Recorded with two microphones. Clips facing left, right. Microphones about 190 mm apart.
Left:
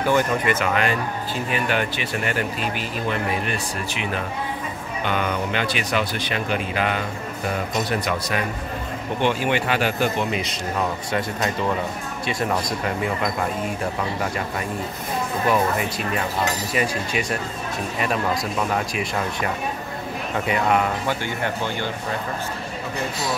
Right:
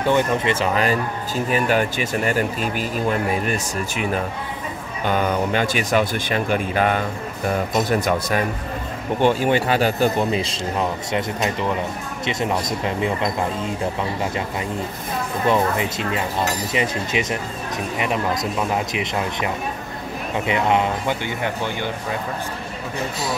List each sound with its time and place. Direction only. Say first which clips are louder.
0.0 s speech: right 1 dB; 25° right (ahead or behind); by 7.0 s 45° right (ahead or behind)
8.0 s speech: right 4 dB; 45° right (ahead or behind); by 13.7 s 25° right (ahead or behind)
15.4 s speech: right 2 dB; 20° right (ahead or behind)